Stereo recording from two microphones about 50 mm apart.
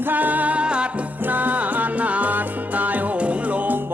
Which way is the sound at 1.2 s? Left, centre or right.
Right.